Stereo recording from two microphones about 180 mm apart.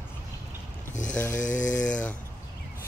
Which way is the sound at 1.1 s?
5° left (ahead or behind).